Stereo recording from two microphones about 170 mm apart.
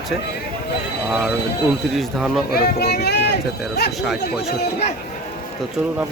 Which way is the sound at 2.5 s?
65° left (ahead or behind).